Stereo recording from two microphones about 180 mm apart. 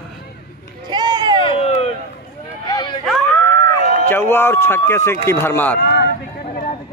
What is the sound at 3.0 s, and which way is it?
Screaming, centre (ahead or behind).